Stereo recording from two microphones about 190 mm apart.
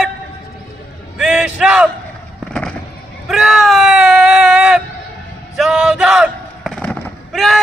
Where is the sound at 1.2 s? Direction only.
5° right (ahead or behind).